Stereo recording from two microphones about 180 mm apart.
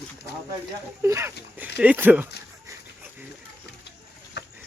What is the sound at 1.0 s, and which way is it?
Speech, 15° right (ahead or behind).